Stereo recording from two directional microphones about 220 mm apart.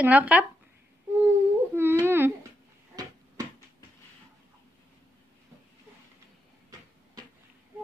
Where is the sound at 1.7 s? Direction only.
10° right (ahead or behind).